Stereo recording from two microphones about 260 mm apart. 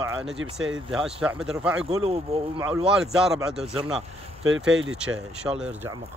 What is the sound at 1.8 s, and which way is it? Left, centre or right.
Speech, right.